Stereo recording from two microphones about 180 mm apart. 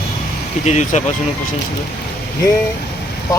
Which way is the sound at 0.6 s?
40° left (ahead or behind).